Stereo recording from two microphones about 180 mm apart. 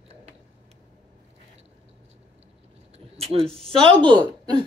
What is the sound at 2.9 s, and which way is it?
Speech, 35° right (ahead or behind).